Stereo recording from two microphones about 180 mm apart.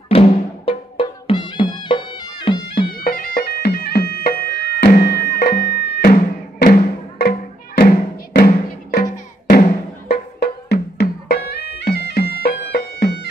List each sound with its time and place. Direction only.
0.1 s drum: 30° left (ahead or behind)
0.7 s music: 30° left (ahead or behind)
3.0 s bagpipes: 55° left (ahead or behind)
9.5 s music: 55° left (ahead or behind)